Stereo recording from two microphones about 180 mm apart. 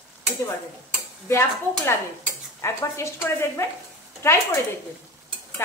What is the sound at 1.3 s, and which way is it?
Speech, 15° left (ahead or behind).